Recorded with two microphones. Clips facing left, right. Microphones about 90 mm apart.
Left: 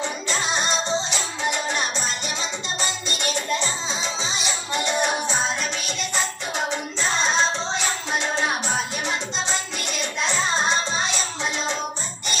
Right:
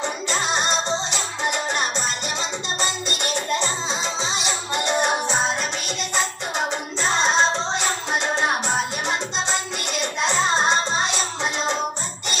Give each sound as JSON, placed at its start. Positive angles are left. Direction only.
{"t": 4.9, "sound": "music", "side_deg": -20}
{"t": 6.7, "sound": "music", "side_deg": -30}